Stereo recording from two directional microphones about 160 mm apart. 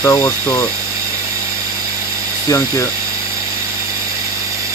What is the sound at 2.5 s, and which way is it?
Speech, 20° left (ahead or behind).